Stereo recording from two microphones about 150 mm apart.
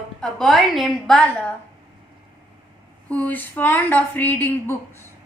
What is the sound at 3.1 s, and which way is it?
A woman's voice, 10° left (ahead or behind).